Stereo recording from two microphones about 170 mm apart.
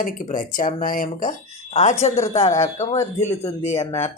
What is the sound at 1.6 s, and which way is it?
Speech, 35° left (ahead or behind).